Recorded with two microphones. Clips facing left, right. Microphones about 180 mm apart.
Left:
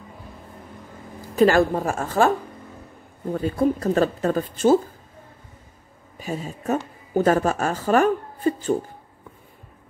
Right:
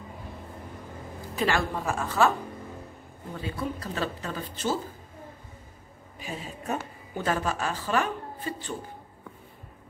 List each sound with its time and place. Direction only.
1.3 s speech: 45° left (ahead or behind)
3.3 s speech: 45° left (ahead or behind)
6.1 s speech: 45° left (ahead or behind)